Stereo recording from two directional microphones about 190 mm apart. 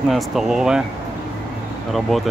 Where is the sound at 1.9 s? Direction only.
Centre (ahead or behind).